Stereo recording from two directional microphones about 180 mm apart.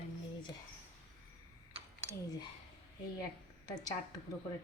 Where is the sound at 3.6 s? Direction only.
20° left (ahead or behind).